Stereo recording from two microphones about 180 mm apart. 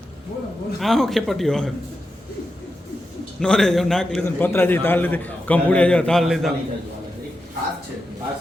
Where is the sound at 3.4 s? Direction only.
5° left (ahead or behind).